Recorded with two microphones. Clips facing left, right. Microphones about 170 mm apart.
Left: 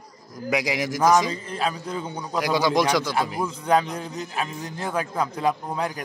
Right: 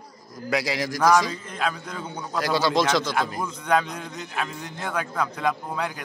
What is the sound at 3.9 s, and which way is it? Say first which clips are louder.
A man's voice: left 2 dB; 35° left (ahead or behind).